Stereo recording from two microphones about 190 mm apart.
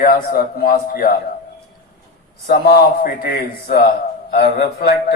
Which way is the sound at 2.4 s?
55° left (ahead or behind).